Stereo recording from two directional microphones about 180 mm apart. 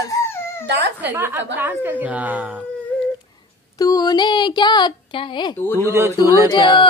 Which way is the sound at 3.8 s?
20° left (ahead or behind).